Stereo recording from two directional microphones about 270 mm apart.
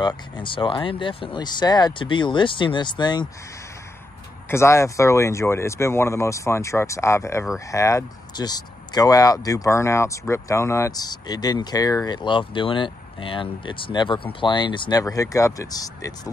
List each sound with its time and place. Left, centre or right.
0.0 s speech: centre
4.5 s speech: centre